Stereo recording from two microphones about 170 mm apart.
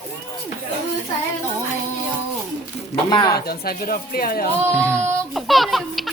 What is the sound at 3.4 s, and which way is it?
Speech, 60° left (ahead or behind).